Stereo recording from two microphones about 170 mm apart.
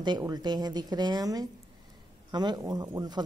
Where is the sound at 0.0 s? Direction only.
25° right (ahead or behind).